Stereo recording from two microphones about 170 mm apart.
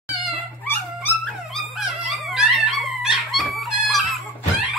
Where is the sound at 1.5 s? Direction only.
Centre (ahead or behind).